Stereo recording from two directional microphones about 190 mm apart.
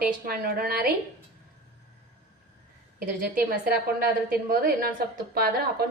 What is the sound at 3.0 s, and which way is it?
A woman's voice, 50° right (ahead or behind).